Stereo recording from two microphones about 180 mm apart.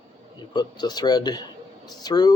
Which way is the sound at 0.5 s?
25° left (ahead or behind).